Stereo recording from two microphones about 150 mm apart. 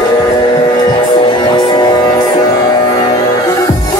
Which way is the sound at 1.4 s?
30° left (ahead or behind).